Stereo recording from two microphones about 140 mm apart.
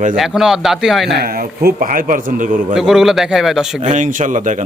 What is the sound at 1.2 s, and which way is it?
A man's voice, 90° right.